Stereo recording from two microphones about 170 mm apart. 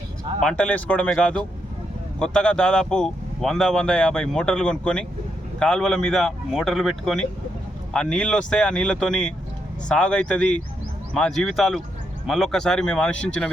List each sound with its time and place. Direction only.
0.3 s speech: 5° left (ahead or behind)